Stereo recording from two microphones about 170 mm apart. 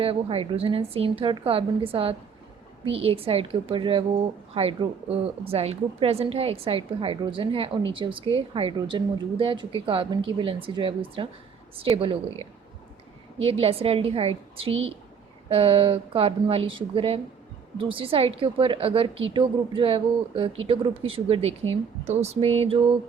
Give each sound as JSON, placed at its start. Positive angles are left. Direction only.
{"t": 0.0, "sound": "a woman's voice", "side_deg": -35}